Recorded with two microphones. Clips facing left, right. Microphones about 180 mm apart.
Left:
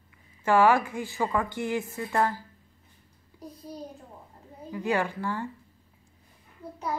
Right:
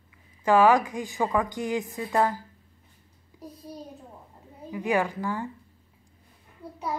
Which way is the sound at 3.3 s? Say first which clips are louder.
Even; 15° right (ahead or behind).